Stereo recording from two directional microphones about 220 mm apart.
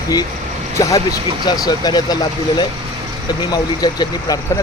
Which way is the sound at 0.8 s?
15° left (ahead or behind).